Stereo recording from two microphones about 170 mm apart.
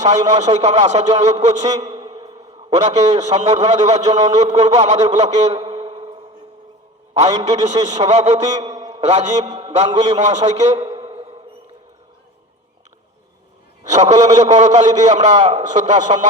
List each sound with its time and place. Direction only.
0.0 s a man's voice: 45° right (ahead or behind)
5.7 s a sound: 35° right (ahead or behind)
7.1 s a man's voice: 40° right (ahead or behind)
8.9 s mantra: 40° right (ahead or behind)
9.5 s a man's voice: 35° right (ahead or behind)
13.9 s a man's voice: 45° right (ahead or behind)